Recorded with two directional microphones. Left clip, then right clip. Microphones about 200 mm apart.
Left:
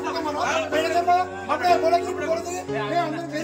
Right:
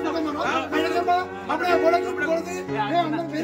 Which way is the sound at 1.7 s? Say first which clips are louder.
Left 1 dB; 10° left (ahead or behind).